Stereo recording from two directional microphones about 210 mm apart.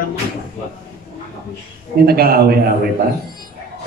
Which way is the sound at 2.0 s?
45° right (ahead or behind).